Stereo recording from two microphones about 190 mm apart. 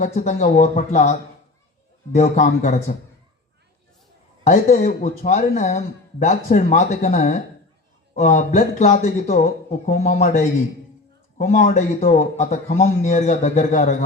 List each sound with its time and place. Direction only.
0.0 s speech: 40° left (ahead or behind)
2.1 s speech: 40° left (ahead or behind)
4.4 s speech: 45° left (ahead or behind)